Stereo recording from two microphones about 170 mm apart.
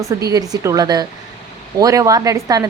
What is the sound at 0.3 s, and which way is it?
Speech, 20° right (ahead or behind).